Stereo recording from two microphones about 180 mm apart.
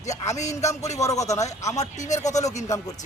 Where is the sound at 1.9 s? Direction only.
40° left (ahead or behind).